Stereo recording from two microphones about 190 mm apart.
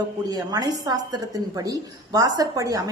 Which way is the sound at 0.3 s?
20° right (ahead or behind).